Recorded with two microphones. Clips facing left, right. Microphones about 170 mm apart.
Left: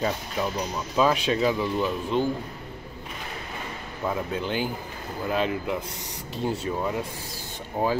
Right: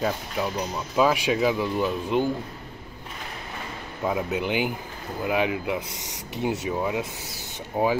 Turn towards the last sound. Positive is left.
turn(degrees=-10)  # may be behind; listen again after turning